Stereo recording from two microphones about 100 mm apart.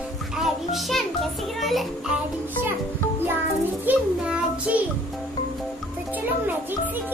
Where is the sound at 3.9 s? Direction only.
15° right (ahead or behind).